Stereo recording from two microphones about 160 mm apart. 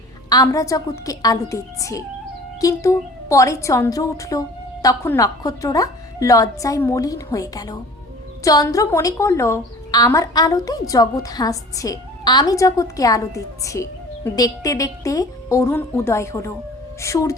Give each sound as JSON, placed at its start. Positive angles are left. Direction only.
{"t": 0.3, "sound": "a woman's voice", "side_deg": 20}